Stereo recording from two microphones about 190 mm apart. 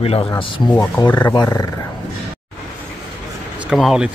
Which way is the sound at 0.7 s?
15° left (ahead or behind).